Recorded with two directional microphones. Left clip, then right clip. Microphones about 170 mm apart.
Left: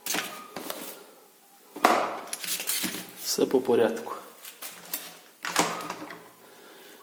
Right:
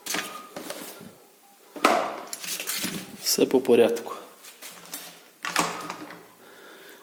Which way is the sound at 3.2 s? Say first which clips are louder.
Right 3 dB; 40° right (ahead or behind).